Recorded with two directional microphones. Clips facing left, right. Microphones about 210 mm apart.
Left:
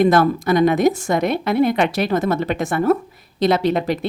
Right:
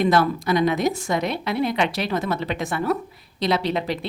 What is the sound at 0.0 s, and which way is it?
A woman's voice, 50° left (ahead or behind).